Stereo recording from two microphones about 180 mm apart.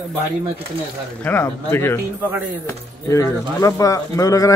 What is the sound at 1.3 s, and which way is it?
Speech, 10° left (ahead or behind).